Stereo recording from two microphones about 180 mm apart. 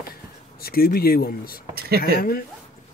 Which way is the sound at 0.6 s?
55° left (ahead or behind).